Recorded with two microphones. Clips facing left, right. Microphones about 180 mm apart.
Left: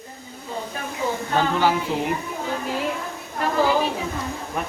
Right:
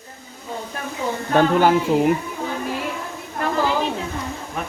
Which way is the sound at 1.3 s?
55° right (ahead or behind).